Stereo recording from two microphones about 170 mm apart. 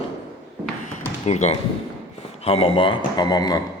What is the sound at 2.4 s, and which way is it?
Speech, 35° left (ahead or behind).